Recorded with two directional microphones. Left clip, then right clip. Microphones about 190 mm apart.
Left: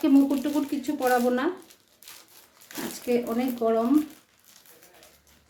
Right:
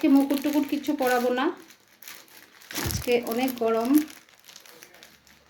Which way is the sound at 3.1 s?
5° right (ahead or behind).